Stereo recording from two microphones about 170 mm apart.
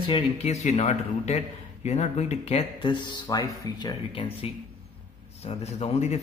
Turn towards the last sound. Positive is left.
turn(degrees=40)  # may be behind; listen again after turning